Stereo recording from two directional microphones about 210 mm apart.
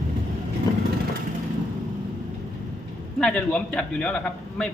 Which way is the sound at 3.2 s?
5° left (ahead or behind).